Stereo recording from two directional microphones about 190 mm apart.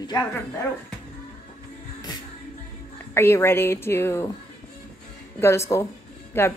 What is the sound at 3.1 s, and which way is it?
Speech, 10° left (ahead or behind).